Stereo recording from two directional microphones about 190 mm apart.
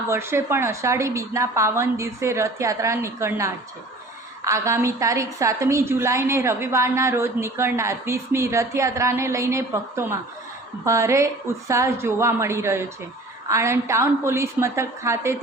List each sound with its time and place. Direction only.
0.1 s a woman's voice: 15° right (ahead or behind)